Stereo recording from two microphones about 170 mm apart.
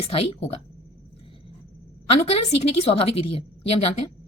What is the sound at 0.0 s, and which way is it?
Speech, 35° left (ahead or behind).